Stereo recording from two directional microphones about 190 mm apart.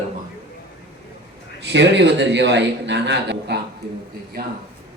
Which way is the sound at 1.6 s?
65° right (ahead or behind).